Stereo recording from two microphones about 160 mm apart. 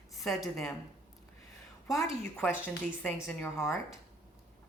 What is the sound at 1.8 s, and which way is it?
A woman's voice, centre (ahead or behind).